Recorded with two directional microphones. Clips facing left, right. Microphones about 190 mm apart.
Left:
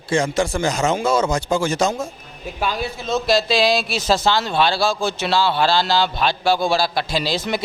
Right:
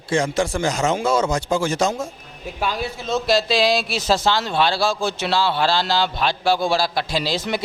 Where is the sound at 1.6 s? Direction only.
15° left (ahead or behind).